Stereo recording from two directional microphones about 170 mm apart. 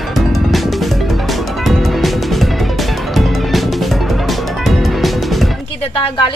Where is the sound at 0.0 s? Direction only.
Centre (ahead or behind).